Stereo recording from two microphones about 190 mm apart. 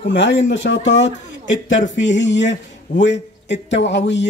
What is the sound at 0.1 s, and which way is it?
A man's voice, 70° left (ahead or behind).